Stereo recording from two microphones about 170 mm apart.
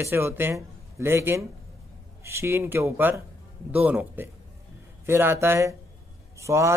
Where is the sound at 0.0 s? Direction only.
15° right (ahead or behind).